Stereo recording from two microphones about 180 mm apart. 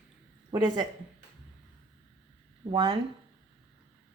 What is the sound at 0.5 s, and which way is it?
Speech, 25° right (ahead or behind).